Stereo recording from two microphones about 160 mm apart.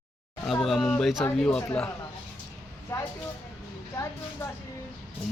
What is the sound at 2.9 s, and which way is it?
Speech, 15° left (ahead or behind).